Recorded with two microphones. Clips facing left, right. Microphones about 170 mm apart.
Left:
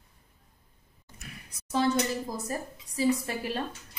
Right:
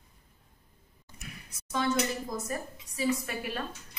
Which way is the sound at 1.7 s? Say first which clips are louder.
Left 3 dB; 35° left (ahead or behind).